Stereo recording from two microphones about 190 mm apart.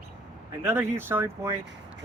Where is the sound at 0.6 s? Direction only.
10° right (ahead or behind).